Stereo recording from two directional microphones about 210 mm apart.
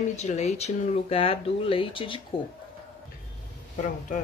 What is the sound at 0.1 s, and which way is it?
Speech, 30° left (ahead or behind).